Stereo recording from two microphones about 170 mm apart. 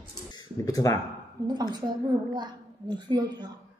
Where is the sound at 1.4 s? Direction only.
25° right (ahead or behind).